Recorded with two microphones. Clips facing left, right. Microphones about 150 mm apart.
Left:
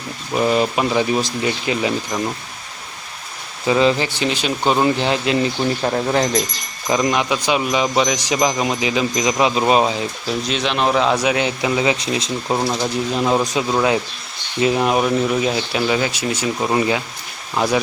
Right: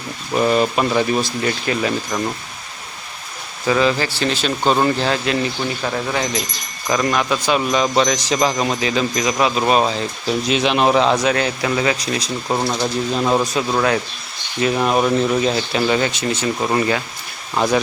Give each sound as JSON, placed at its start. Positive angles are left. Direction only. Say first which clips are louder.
{"t": 0.3, "sound": "speech", "louder": "right 1 dB", "side_deg": 10}
{"t": 3.7, "sound": "speech", "louder": "left 1 dB", "side_deg": 25}
{"t": 6.9, "sound": "speech", "louder": "even", "side_deg": 20}
{"t": 10.2, "sound": "speech", "louder": "right 5 dB", "side_deg": -5}
{"t": 11.1, "sound": "speech", "louder": "right 1 dB", "side_deg": 10}
{"t": 12.5, "sound": "speech", "louder": "even", "side_deg": 5}
{"t": 14.7, "sound": "speech", "louder": "right 1 dB", "side_deg": 15}